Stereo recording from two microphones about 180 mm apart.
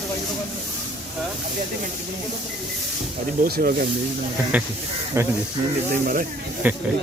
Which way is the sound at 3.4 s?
55° right (ahead or behind).